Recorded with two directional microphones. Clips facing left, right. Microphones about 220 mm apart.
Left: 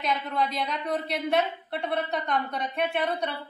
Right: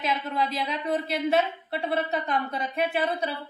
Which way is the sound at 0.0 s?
Centre (ahead or behind).